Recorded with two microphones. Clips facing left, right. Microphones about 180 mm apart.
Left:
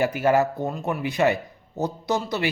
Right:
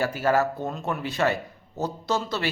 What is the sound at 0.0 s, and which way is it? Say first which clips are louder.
A man's voice: left 3 dB; 15° left (ahead or behind).